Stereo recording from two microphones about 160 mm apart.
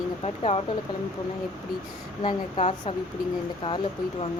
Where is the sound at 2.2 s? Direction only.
35° left (ahead or behind).